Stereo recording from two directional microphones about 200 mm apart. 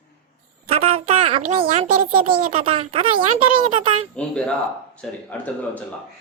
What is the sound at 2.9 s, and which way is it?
Speech, 25° right (ahead or behind).